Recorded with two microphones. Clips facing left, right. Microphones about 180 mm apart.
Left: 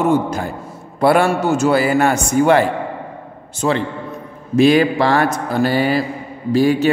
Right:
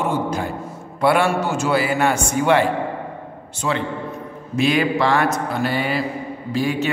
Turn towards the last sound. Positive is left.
turn(degrees=40)  # may be behind; listen again after turning